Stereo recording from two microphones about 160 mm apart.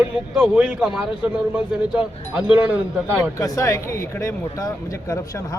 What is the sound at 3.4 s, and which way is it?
Speech, 20° left (ahead or behind).